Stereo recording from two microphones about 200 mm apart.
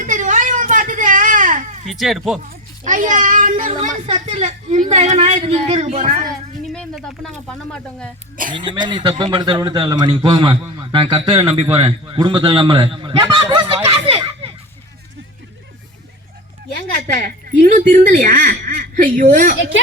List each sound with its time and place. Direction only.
0.0 s a sound: 40° right (ahead or behind)
1.9 s speech: centre (ahead or behind)
2.4 s a child's voice: 40° right (ahead or behind)
6.7 s speech: centre (ahead or behind)
8.5 s a man's voice: 25° right (ahead or behind)
17.2 s speech: 45° right (ahead or behind)